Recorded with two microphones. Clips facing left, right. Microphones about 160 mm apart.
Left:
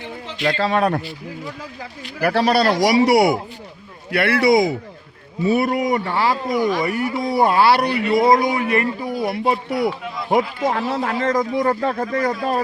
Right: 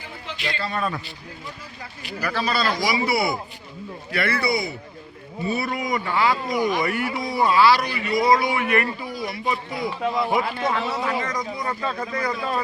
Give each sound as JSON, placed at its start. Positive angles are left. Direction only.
{"t": 0.6, "sound": "a man's voice", "side_deg": 85}
{"t": 2.2, "sound": "a man's voice", "side_deg": 70}
{"t": 5.4, "sound": "speech", "side_deg": 80}
{"t": 5.6, "sound": "a man's voice", "side_deg": 35}
{"t": 6.5, "sound": "speech", "side_deg": -15}
{"t": 7.3, "sound": "speech", "side_deg": 55}
{"t": 9.0, "sound": "a man's voice", "side_deg": 50}
{"t": 10.3, "sound": "speech", "side_deg": 45}